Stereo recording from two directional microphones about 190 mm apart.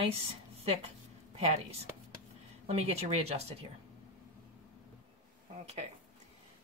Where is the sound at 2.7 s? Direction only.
30° right (ahead or behind).